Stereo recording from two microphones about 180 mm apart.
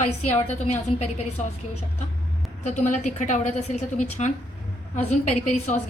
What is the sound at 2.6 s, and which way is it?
A woman's voice, 45° left (ahead or behind).